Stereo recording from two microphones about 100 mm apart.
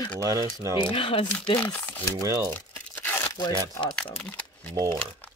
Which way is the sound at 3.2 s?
45° left (ahead or behind).